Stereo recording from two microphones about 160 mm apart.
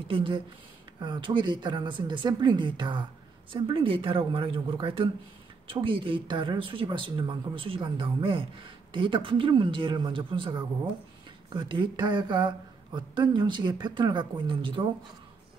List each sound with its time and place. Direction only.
0.1 s speech: 30° right (ahead or behind)